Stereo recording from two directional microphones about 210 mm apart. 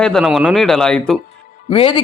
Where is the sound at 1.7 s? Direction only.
25° left (ahead or behind).